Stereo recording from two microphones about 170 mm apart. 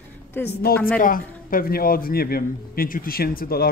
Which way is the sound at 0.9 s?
55° left (ahead or behind).